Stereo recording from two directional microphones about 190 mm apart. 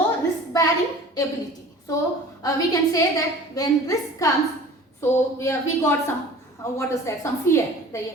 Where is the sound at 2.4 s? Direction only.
15° left (ahead or behind).